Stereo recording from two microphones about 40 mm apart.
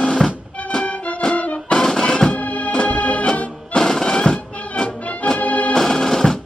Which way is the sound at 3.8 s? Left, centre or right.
Centre.